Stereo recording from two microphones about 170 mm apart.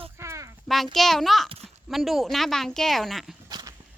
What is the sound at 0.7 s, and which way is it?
Speech, centre (ahead or behind).